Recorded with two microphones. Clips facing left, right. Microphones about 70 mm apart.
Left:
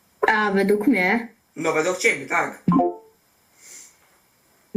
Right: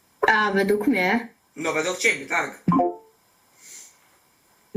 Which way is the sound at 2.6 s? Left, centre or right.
Centre.